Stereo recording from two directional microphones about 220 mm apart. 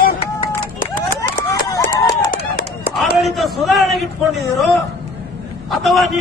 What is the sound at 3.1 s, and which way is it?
A man's voice, centre (ahead or behind).